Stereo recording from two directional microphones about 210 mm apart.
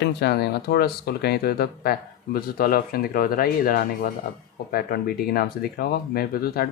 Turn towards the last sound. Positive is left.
turn(degrees=45)  # may be behind; listen again after turning